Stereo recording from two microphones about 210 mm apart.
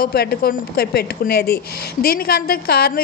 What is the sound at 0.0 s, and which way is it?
Speech, 50° left (ahead or behind).